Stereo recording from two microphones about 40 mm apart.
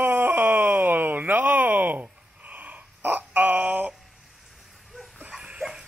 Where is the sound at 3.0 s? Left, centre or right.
Right.